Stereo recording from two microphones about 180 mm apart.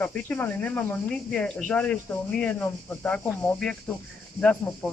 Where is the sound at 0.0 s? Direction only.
10° left (ahead or behind).